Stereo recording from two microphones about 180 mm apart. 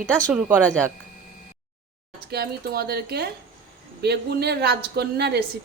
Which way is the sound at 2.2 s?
60° right (ahead or behind).